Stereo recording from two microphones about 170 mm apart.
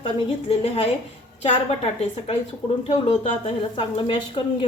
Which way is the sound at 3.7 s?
30° left (ahead or behind).